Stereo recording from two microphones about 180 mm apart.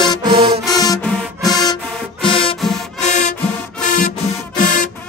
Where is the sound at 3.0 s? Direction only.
40° left (ahead or behind).